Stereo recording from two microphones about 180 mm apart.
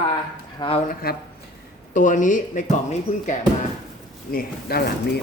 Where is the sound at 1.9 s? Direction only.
45° left (ahead or behind).